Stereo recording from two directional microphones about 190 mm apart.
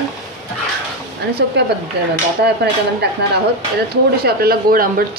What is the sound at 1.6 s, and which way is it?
Speech, 60° right (ahead or behind).